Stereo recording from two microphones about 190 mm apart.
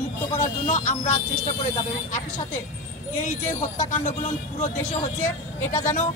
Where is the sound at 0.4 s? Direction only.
40° left (ahead or behind).